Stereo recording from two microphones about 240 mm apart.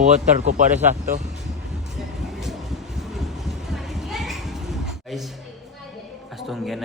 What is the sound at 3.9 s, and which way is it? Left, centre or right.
Children playing, centre.